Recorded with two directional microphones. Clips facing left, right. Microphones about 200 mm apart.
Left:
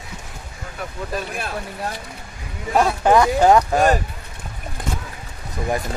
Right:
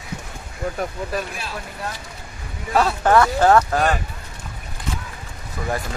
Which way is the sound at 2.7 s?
15° left (ahead or behind).